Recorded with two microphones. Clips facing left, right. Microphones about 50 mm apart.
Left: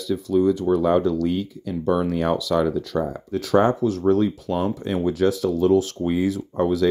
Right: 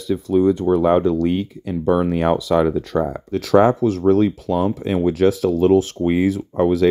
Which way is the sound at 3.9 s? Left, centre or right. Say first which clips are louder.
Right 4 dB; right.